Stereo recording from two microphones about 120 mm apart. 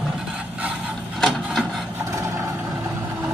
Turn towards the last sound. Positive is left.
turn(degrees=0)  # may be behind; listen again after turning